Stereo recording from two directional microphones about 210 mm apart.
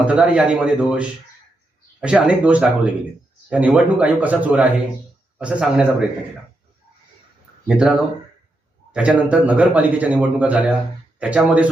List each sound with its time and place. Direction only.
0.0 s a man's voice: 5° right (ahead or behind)
7.7 s a man's voice: 5° right (ahead or behind)